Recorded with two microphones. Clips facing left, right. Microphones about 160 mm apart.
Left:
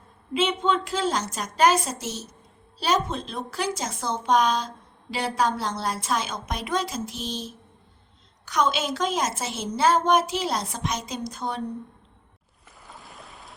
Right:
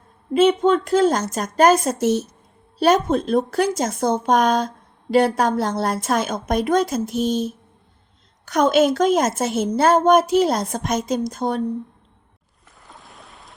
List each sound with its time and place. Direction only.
0.3 s a woman's voice: 45° right (ahead or behind)
12.8 s boat: centre (ahead or behind)